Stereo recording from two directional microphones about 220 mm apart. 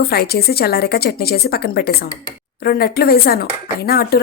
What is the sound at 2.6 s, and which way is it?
Speech, 45° left (ahead or behind).